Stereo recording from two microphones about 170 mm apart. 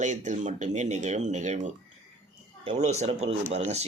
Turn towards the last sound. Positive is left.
turn(degrees=-40)  # may be behind; listen again after turning